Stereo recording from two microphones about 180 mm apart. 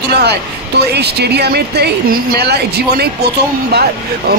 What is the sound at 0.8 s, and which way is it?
Speech, 65° right (ahead or behind).